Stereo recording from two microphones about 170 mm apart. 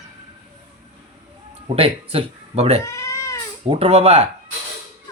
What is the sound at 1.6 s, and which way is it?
Speech, 35° right (ahead or behind).